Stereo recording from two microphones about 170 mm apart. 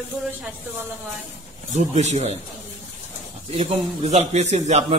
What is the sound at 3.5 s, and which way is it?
Speech, 40° right (ahead or behind).